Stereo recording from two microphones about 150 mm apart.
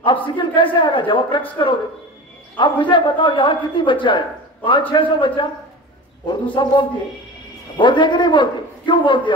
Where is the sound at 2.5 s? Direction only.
30° left (ahead or behind).